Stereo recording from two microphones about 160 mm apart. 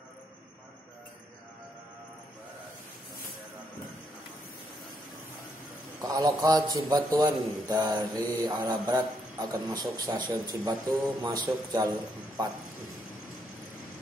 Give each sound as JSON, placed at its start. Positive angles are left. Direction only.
{"t": 5.9, "sound": "a man's voice", "side_deg": -25}